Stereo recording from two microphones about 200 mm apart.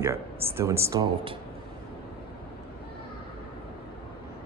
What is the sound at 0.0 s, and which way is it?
Speech, 10° right (ahead or behind).